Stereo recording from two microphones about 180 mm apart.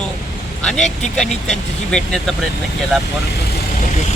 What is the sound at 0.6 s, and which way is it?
Speech, 5° left (ahead or behind).